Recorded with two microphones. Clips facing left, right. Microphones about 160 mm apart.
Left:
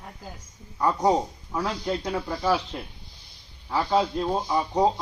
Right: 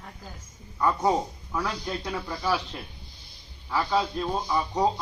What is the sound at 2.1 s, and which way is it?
Speech, 30° left (ahead or behind).